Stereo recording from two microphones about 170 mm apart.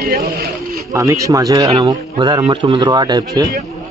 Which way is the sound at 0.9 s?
20° right (ahead or behind).